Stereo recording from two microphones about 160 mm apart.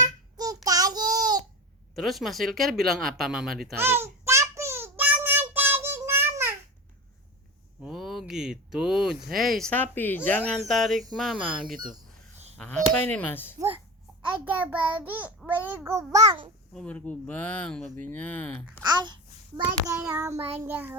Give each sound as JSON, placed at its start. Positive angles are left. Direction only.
{"t": 0.0, "sound": "child singing", "side_deg": -25}
{"t": 2.0, "sound": "speech", "side_deg": 0}
{"t": 3.8, "sound": "child singing", "side_deg": -15}
{"t": 7.8, "sound": "speech", "side_deg": 0}
{"t": 10.5, "sound": "speech", "side_deg": 0}
{"t": 13.7, "sound": "a sound", "side_deg": -10}
{"t": 15.4, "sound": "child singing", "side_deg": -10}
{"t": 16.1, "sound": "a child's voice", "side_deg": -25}
{"t": 16.7, "sound": "speech", "side_deg": 10}
{"t": 18.9, "sound": "a child's voice", "side_deg": -25}
{"t": 19.9, "sound": "child singing", "side_deg": -10}